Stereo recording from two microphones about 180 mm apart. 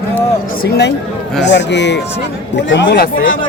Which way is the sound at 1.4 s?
75° left (ahead or behind).